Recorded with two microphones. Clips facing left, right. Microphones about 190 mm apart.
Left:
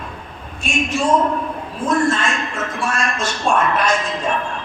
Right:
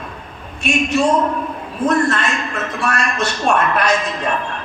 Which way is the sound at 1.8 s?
65° right (ahead or behind).